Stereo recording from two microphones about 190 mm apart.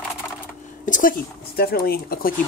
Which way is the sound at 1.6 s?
55° left (ahead or behind).